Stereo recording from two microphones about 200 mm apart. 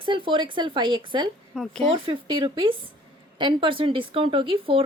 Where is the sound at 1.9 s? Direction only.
25° right (ahead or behind).